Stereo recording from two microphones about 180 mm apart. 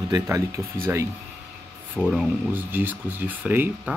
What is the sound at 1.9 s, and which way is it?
Speech, centre (ahead or behind).